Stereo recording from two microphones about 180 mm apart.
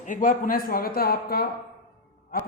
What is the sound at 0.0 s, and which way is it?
Speech, 45° left (ahead or behind).